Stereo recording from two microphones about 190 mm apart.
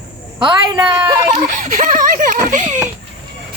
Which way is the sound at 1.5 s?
45° right (ahead or behind).